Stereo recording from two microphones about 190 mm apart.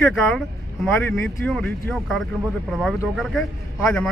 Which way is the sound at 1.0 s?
5° left (ahead or behind).